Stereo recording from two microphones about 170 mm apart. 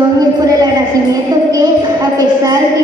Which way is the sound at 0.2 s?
20° right (ahead or behind).